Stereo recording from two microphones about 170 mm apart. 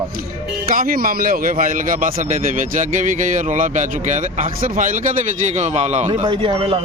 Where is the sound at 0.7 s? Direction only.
60° right (ahead or behind); by 6.2 s 40° right (ahead or behind).